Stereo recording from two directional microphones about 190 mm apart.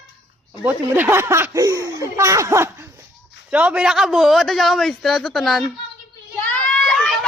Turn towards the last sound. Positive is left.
turn(degrees=0)  # may be behind; listen again after turning